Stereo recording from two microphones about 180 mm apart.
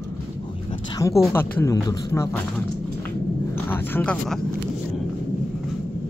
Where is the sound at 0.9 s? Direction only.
15° left (ahead or behind).